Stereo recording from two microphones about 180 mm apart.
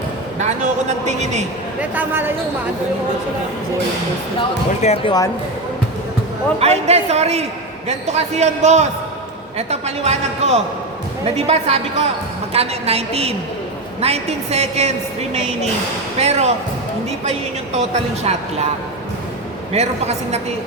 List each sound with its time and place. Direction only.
0.3 s a woman's voice: 40° right (ahead or behind)
1.8 s speech: 10° right (ahead or behind)
4.8 s speech: 40° left (ahead or behind)
6.6 s a woman's voice: 35° right (ahead or behind)
17.7 s a woman's voice: 40° right (ahead or behind)
19.7 s a woman's voice: 35° right (ahead or behind)